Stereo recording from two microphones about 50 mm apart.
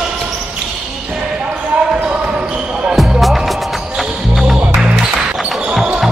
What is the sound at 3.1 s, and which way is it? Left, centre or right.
Music, centre.